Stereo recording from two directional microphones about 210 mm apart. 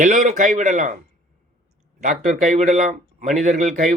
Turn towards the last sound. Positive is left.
turn(degrees=-35)  # may be behind; listen again after turning